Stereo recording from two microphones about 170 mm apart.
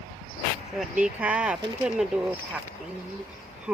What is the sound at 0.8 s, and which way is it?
Speech, 5° right (ahead or behind).